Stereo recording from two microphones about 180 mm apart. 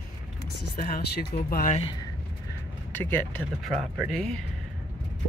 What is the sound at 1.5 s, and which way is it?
Speech, 45° left (ahead or behind).